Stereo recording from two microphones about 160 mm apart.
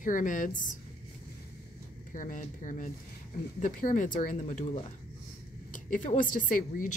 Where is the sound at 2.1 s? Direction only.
55° left (ahead or behind).